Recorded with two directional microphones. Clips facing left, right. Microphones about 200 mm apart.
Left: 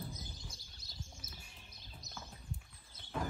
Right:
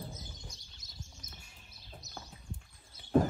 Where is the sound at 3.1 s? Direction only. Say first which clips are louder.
Right 13 dB; 50° right (ahead or behind).